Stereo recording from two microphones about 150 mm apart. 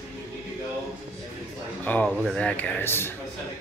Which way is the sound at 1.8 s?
10° left (ahead or behind).